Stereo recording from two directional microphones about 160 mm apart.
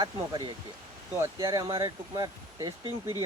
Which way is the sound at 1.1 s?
20° right (ahead or behind).